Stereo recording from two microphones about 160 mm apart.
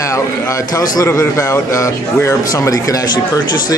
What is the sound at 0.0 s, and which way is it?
A man's voice, 20° left (ahead or behind).